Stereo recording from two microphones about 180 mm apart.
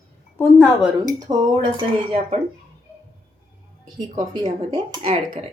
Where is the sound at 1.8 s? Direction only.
30° right (ahead or behind).